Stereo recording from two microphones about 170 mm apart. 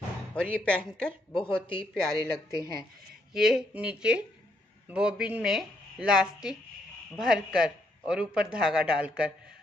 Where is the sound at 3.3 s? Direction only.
5° right (ahead or behind).